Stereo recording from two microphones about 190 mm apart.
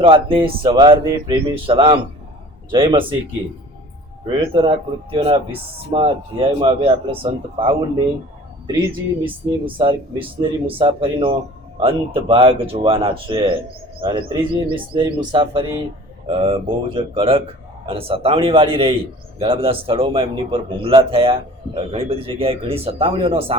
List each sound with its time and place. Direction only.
0.0 s speech: 25° right (ahead or behind)
4.3 s speech: 25° right (ahead or behind)
9.2 s speech: 25° right (ahead or behind)